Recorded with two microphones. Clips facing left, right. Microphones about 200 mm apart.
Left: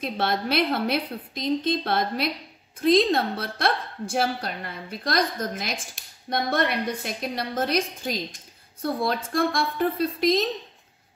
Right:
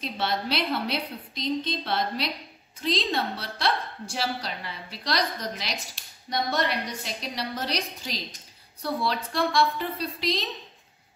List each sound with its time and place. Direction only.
0.0 s a woman's voice: 50° left (ahead or behind)